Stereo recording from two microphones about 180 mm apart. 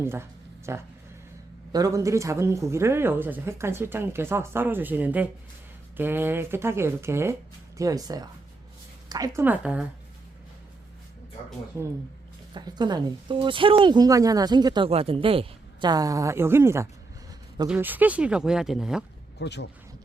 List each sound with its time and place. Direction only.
0.0 s speech: 15° right (ahead or behind)
12.5 s speech: 25° right (ahead or behind); by 19.0 s centre (ahead or behind)
19.4 s speech: 70° left (ahead or behind)